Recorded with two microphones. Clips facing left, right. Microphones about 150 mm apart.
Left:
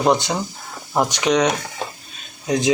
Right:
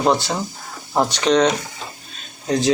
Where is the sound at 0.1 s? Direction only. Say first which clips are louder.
Left 1 dB; 20° left (ahead or behind).